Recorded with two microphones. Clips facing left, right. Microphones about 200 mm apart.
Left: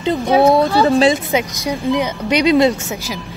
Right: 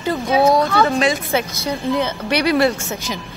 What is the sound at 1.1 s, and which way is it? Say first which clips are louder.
Speech: left 2 dB; 15° left (ahead or behind).